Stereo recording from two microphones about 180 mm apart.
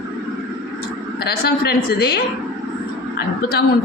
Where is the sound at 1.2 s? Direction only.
60° left (ahead or behind).